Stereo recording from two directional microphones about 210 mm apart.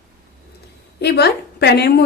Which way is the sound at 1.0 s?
50° left (ahead or behind).